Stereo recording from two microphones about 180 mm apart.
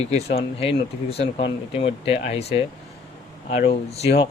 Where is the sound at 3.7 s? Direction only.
35° left (ahead or behind).